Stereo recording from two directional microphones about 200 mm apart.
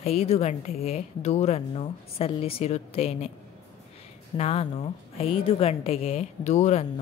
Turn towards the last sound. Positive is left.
turn(degrees=35)  # may be behind; listen again after turning